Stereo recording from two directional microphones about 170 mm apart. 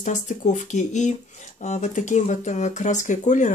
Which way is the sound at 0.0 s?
45° left (ahead or behind).